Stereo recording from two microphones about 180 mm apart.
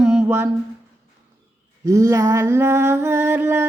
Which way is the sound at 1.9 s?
15° right (ahead or behind).